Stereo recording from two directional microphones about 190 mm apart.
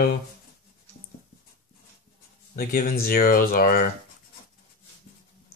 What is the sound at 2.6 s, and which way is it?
Speech, 50° left (ahead or behind).